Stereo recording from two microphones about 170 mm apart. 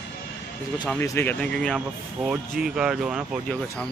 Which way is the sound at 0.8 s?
10° left (ahead or behind).